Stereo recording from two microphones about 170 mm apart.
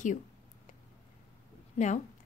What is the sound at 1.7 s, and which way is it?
Speech, 45° left (ahead or behind).